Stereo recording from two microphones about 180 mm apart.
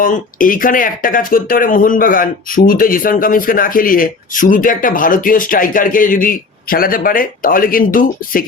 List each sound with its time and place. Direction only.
0.0 s speech: 50° left (ahead or behind)